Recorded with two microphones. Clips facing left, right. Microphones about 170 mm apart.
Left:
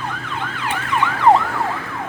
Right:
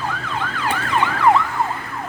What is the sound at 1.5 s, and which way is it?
Emergency vehicle, 85° left.